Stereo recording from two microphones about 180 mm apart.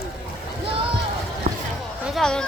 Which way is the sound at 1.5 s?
40° right (ahead or behind).